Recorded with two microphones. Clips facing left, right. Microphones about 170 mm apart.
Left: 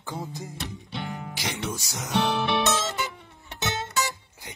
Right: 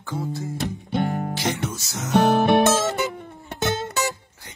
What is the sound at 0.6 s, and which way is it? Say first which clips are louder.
Music: right 12 dB; 45° right (ahead or behind).